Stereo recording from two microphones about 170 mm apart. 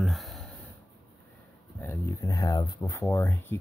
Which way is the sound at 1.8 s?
15° left (ahead or behind).